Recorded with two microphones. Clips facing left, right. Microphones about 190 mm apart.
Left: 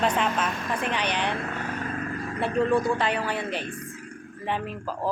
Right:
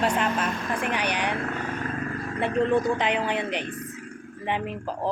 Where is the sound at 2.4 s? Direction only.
20° right (ahead or behind).